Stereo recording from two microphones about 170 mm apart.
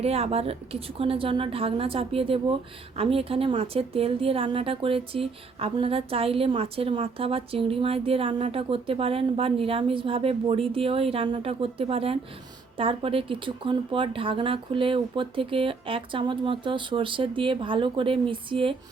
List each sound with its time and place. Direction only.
0.0 s a woman's voice: 35° right (ahead or behind)